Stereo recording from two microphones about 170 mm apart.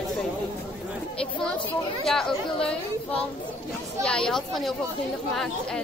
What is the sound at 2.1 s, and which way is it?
Speech, 5° left (ahead or behind).